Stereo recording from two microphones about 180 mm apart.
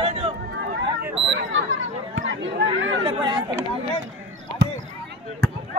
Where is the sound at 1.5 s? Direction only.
90° right.